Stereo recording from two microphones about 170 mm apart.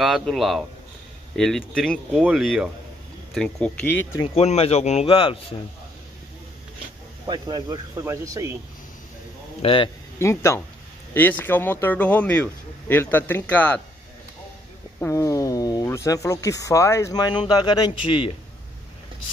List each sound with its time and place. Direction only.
0.0 s speech: centre (ahead or behind)
4.2 s speech: 35° left (ahead or behind)
7.2 s speech: 25° right (ahead or behind)
9.6 s speech: 30° left (ahead or behind)
10.1 s speech: 15° left (ahead or behind)
15.0 s speech: 15° left (ahead or behind)